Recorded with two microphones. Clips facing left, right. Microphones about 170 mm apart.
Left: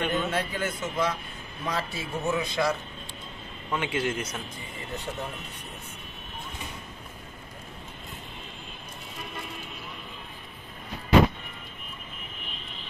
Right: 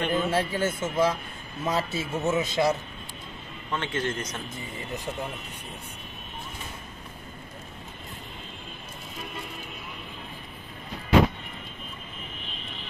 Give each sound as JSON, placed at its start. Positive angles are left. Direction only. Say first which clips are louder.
{"t": 0.1, "sound": "a man's voice", "louder": "right 3 dB", "side_deg": -30}
{"t": 3.7, "sound": "speech", "louder": "left 1 dB", "side_deg": 10}